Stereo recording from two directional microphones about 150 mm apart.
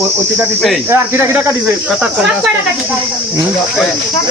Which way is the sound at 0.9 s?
15° right (ahead or behind).